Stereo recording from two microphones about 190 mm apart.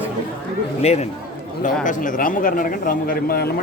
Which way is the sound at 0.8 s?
35° left (ahead or behind).